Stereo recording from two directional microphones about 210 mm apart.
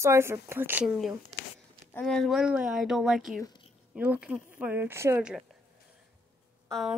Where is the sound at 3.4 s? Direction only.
20° left (ahead or behind).